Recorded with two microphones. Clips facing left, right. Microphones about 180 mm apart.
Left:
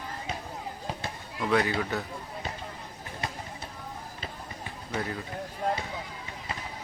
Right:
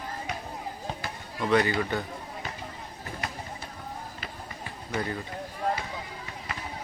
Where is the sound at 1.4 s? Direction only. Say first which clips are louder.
Right 2 dB; centre (ahead or behind).